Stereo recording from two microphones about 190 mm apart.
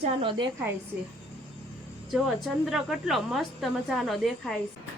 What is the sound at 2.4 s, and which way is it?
A woman's voice, 5° right (ahead or behind).